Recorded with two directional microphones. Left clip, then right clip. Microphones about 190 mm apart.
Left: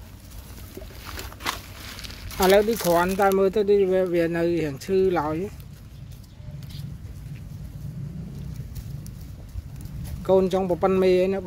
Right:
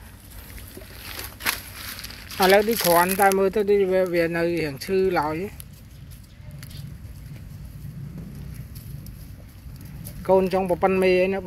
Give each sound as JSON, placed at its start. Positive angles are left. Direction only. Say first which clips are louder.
{"t": 1.1, "sound": "a sound", "louder": "right 3 dB", "side_deg": -25}
{"t": 2.3, "sound": "speech", "louder": "right 1 dB", "side_deg": -10}
{"t": 10.2, "sound": "speech", "louder": "right 1 dB", "side_deg": 0}